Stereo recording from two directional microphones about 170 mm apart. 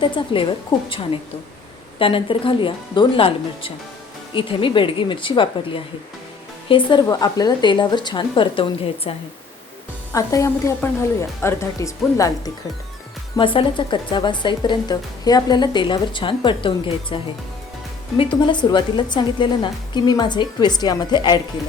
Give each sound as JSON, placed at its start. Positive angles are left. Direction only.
{"t": 0.3, "sound": "speech", "side_deg": 30}
{"t": 2.0, "sound": "speech", "side_deg": 30}
{"t": 10.1, "sound": "speech", "side_deg": 20}
{"t": 13.3, "sound": "speech", "side_deg": 30}
{"t": 18.2, "sound": "speech", "side_deg": 30}